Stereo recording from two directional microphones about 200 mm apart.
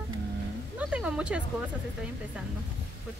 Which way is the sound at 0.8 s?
5° right (ahead or behind).